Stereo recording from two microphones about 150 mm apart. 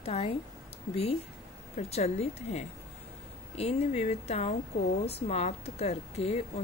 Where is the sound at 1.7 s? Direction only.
45° left (ahead or behind).